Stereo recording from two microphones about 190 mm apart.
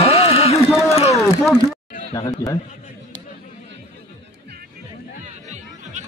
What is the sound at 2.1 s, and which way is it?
Speech, 20° left (ahead or behind).